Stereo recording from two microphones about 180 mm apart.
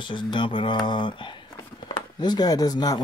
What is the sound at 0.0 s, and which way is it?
Speech, 25° left (ahead or behind).